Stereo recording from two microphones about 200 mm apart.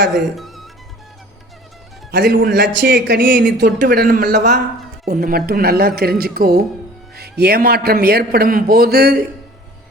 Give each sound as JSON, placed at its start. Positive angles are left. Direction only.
{"t": 0.3, "sound": "music", "side_deg": 0}
{"t": 2.0, "sound": "a man's voice", "side_deg": -50}